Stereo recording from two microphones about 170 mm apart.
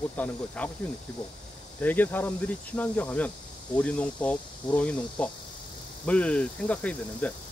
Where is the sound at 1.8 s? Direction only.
10° left (ahead or behind).